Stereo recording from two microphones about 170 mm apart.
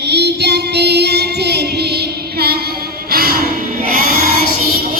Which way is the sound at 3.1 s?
65° right (ahead or behind).